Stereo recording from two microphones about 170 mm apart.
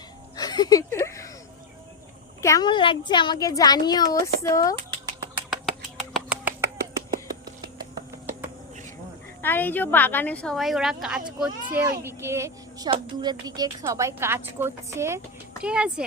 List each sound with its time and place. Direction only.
0.3 s a sound: 25° left (ahead or behind)
2.4 s a woman's voice: 20° left (ahead or behind)
6.1 s finger snapping: 10° right (ahead or behind)
9.4 s a woman's voice: 10° left (ahead or behind); by 15.2 s 15° right (ahead or behind)
15.6 s speech: 5° right (ahead or behind)